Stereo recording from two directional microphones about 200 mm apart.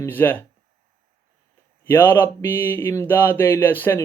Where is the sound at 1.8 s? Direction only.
10° left (ahead or behind).